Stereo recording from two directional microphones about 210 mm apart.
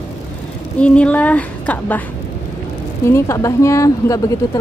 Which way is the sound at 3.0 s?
15° left (ahead or behind).